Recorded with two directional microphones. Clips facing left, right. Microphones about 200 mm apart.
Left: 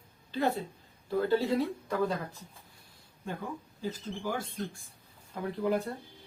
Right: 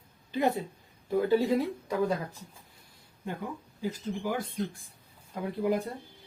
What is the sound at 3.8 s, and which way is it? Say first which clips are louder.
Speech: right 3 dB; 15° right (ahead or behind).